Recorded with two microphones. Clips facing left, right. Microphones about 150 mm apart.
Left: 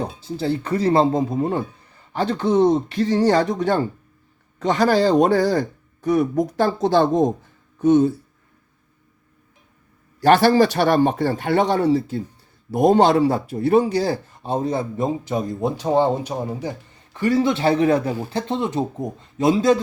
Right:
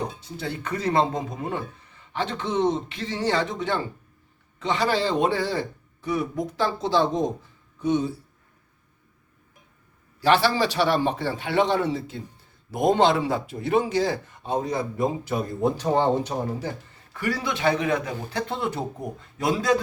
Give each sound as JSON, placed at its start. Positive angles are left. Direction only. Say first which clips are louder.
{"t": 0.0, "sound": "a man's voice", "louder": "left 6 dB", "side_deg": 30}
{"t": 10.2, "sound": "a man's voice", "louder": "left 6 dB", "side_deg": 50}
{"t": 17.2, "sound": "speech", "louder": "left 9 dB", "side_deg": 25}